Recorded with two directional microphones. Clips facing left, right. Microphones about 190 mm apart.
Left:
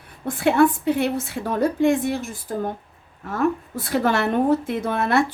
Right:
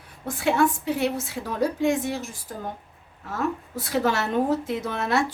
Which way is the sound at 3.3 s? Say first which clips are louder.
Left 5 dB; 55° left (ahead or behind).